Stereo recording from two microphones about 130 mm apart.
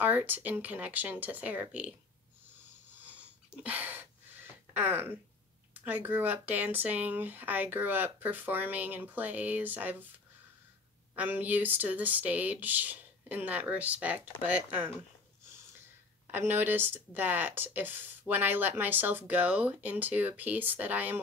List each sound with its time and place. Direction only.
0.0 s speech: 15° right (ahead or behind)
3.1 s a sound: 10° right (ahead or behind)
4.7 s speech: 15° right (ahead or behind)
11.1 s speech: 15° right (ahead or behind)
16.3 s speech: 15° right (ahead or behind)